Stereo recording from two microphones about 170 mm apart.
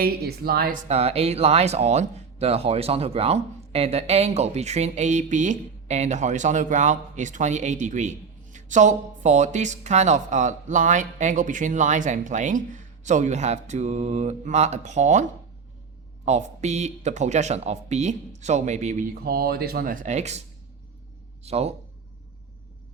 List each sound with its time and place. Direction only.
0.0 s speech: 65° right (ahead or behind)
0.9 s speech: 40° right (ahead or behind)
21.4 s speech: 40° right (ahead or behind)